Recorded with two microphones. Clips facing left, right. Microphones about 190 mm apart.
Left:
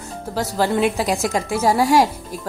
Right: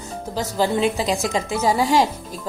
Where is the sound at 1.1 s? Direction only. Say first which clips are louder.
Left 1 dB; centre (ahead or behind).